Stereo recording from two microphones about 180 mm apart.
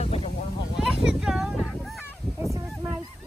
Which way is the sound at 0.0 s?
30° left (ahead or behind).